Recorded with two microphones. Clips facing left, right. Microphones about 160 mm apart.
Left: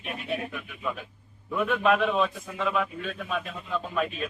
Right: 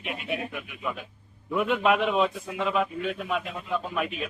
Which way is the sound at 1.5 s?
15° right (ahead or behind).